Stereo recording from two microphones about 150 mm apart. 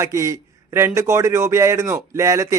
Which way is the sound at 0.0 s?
20° right (ahead or behind).